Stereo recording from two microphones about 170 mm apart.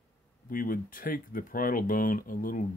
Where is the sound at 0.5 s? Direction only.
55° left (ahead or behind).